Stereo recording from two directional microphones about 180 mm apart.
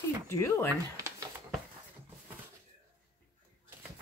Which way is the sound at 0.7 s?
15° right (ahead or behind).